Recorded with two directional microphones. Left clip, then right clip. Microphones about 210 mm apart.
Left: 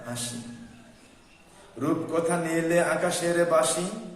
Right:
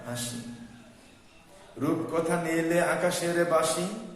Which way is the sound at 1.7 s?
15° left (ahead or behind).